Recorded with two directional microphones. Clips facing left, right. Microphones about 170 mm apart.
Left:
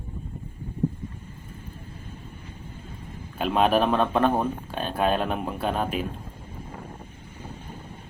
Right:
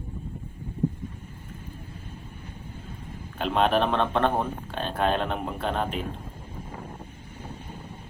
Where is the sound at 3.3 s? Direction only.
10° left (ahead or behind).